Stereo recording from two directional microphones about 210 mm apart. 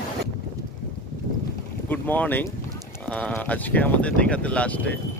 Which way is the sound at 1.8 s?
10° left (ahead or behind).